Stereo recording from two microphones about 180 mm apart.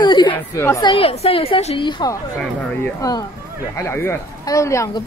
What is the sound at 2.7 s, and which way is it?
Speech, 10° left (ahead or behind).